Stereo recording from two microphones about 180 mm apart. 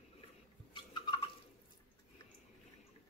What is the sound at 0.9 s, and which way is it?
Fowl, 25° left (ahead or behind).